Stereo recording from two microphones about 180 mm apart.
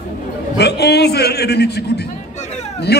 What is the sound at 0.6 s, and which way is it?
A man's voice, 70° left (ahead or behind).